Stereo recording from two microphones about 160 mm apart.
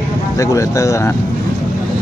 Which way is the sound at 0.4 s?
20° left (ahead or behind).